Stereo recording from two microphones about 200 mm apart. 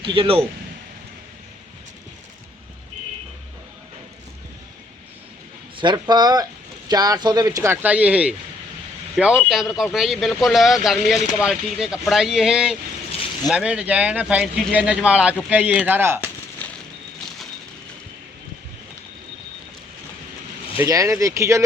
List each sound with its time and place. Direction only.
0.0 s speech: 25° right (ahead or behind)
5.7 s speech: 20° right (ahead or behind)
20.7 s speech: 15° right (ahead or behind)